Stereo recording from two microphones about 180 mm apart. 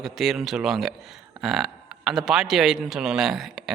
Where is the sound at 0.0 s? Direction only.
Centre (ahead or behind).